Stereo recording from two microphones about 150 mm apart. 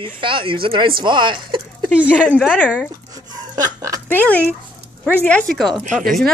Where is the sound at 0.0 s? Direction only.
35° right (ahead or behind).